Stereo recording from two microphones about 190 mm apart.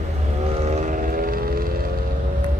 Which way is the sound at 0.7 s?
40° right (ahead or behind).